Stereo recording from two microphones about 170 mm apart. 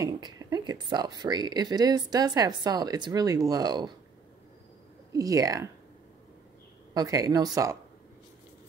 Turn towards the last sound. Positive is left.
turn(degrees=-20)  # may be behind; listen again after turning